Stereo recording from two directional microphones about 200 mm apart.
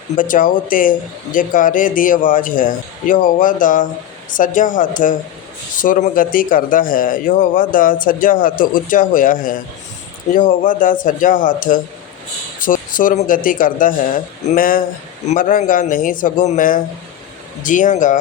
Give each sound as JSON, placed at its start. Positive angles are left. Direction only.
{"t": 0.2, "sound": "speech", "side_deg": 40}